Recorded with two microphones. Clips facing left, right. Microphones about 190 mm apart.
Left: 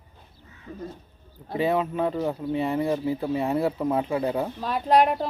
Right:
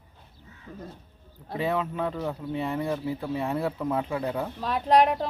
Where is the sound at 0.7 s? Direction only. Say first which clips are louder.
Left 5 dB; centre (ahead or behind).